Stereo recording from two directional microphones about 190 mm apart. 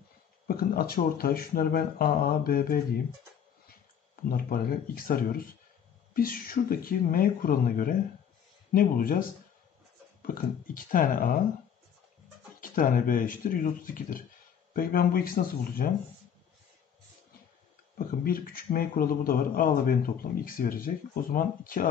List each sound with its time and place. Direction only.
0.5 s speech: 50° left (ahead or behind)
4.3 s speech: 50° left (ahead or behind)
10.2 s speech: 45° left (ahead or behind)
12.5 s speech: 45° left (ahead or behind)
17.9 s speech: 50° left (ahead or behind)